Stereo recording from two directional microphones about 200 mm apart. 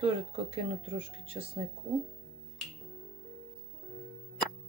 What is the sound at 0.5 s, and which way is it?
Speech, 30° right (ahead or behind).